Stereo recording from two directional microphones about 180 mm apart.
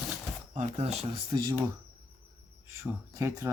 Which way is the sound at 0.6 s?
35° right (ahead or behind).